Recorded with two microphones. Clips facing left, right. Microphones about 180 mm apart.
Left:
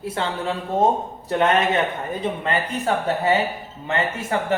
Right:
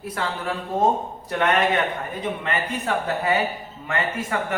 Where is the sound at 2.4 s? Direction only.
30° left (ahead or behind).